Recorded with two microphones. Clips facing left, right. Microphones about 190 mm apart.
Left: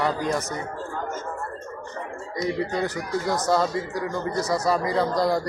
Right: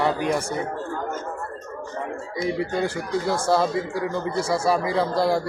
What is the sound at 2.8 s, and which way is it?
Speech, 30° right (ahead or behind).